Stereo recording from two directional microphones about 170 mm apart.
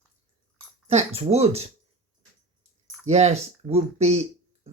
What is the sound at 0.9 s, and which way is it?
Speech, 40° right (ahead or behind).